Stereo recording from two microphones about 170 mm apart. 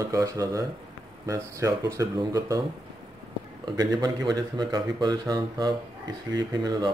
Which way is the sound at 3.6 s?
25° right (ahead or behind).